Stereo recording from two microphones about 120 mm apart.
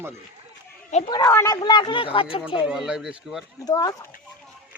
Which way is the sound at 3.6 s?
30° left (ahead or behind).